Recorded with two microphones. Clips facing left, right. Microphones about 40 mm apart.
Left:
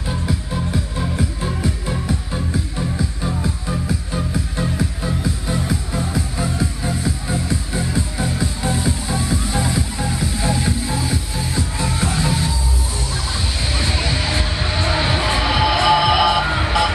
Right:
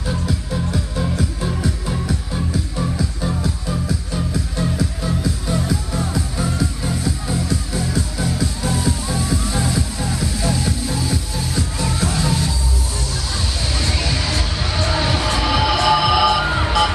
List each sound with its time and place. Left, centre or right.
1.9 s music: left
6.8 s music: centre
7.4 s music: left
13.7 s a sound: left; by 16.7 s centre